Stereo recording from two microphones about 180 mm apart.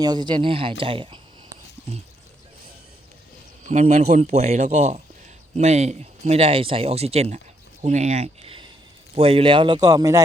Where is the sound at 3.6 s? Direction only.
40° right (ahead or behind).